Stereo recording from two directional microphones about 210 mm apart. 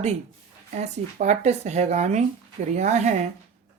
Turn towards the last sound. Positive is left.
turn(degrees=-35)  # may be behind; listen again after turning